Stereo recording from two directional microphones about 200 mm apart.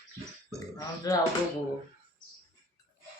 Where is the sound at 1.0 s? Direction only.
20° left (ahead or behind).